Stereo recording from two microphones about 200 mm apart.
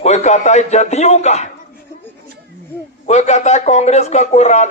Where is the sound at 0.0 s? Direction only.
35° left (ahead or behind).